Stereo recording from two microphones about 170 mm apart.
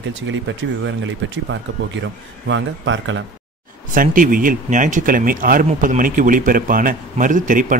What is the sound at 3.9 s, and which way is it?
Speech, 55° right (ahead or behind).